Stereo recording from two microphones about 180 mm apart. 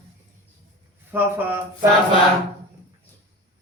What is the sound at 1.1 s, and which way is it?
Speech, 10° right (ahead or behind).